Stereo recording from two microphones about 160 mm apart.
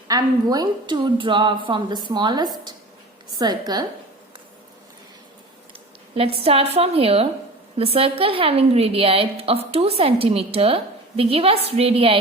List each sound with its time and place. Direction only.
0.1 s a woman's voice: 25° right (ahead or behind)
6.1 s a woman's voice: 35° right (ahead or behind)